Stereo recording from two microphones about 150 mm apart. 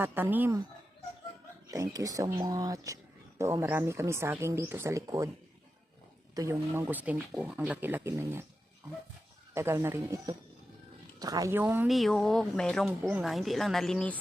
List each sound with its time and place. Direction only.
0.0 s speech: 15° right (ahead or behind)
1.7 s speech: 25° right (ahead or behind)
6.3 s speech: 20° right (ahead or behind)
9.6 s speech: 15° right (ahead or behind)
11.2 s speech: 25° right (ahead or behind)
11.9 s speech: centre (ahead or behind)
13.0 s speech: 10° right (ahead or behind)